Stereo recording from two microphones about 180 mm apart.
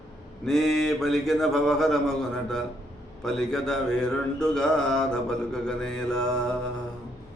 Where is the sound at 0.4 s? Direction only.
Centre (ahead or behind).